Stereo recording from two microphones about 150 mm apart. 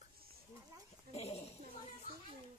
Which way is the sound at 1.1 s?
45° left (ahead or behind).